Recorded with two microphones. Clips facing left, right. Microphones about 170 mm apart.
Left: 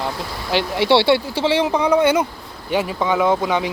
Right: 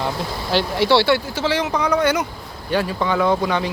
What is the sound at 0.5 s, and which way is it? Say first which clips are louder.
Speech: left 1 dB; 20° left (ahead or behind).